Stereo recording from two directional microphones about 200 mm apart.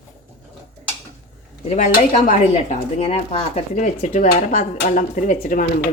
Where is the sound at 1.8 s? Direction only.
35° left (ahead or behind).